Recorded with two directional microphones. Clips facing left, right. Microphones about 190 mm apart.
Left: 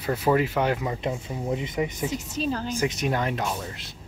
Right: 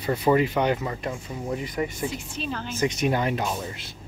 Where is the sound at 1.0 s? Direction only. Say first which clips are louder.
Left 2 dB; 20° left (ahead or behind).